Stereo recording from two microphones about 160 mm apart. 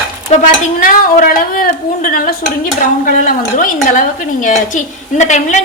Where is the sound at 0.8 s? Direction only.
60° left (ahead or behind).